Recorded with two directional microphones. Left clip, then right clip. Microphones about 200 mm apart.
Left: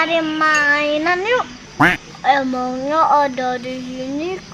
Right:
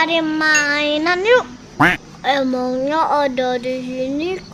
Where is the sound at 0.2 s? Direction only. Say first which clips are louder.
Even; 25° right (ahead or behind).